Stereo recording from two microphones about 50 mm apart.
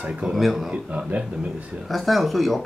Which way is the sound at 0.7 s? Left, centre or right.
Right.